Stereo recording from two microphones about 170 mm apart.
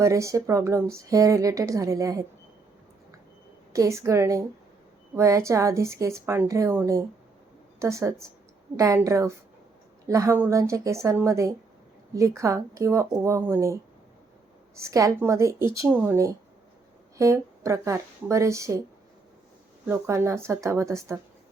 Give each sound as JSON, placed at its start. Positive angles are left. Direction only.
{"t": 0.0, "sound": "speech", "side_deg": -15}
{"t": 3.7, "sound": "speech", "side_deg": -15}
{"t": 14.8, "sound": "speech", "side_deg": -15}
{"t": 19.9, "sound": "speech", "side_deg": -15}